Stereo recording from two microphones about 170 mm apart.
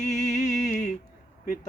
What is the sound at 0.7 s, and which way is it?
Mantra, 55° left (ahead or behind).